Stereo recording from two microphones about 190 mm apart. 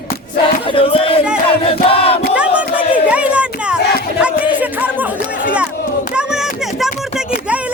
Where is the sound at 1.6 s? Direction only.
30° left (ahead or behind).